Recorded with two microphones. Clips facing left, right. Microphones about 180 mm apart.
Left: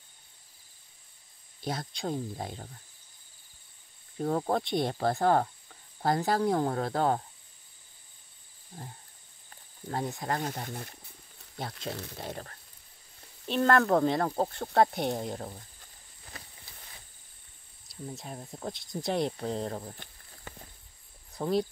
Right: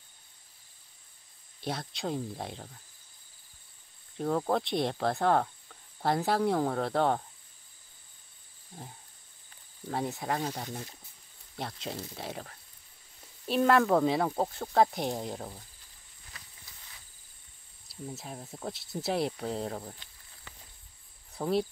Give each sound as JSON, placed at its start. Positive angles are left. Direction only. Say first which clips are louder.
{"t": 1.6, "sound": "speech", "louder": "left 1 dB", "side_deg": 0}
{"t": 4.2, "sound": "speech", "louder": "even", "side_deg": 5}
{"t": 9.8, "sound": "speech", "louder": "even", "side_deg": 0}
{"t": 17.8, "sound": "speech", "louder": "even", "side_deg": 0}
{"t": 20.0, "sound": "a sound", "louder": "left 6 dB", "side_deg": 50}
{"t": 21.4, "sound": "speech", "louder": "left 1 dB", "side_deg": -5}